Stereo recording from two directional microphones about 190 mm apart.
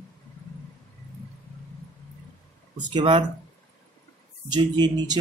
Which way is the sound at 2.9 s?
25° right (ahead or behind).